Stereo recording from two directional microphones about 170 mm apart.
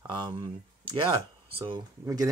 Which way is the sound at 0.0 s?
25° right (ahead or behind).